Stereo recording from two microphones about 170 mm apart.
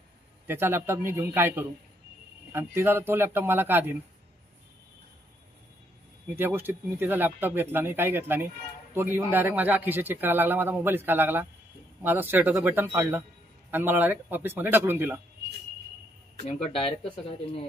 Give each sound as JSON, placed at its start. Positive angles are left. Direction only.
{"t": 0.5, "sound": "speech", "side_deg": -15}
{"t": 6.3, "sound": "speech", "side_deg": -10}
{"t": 16.7, "sound": "speech", "side_deg": 35}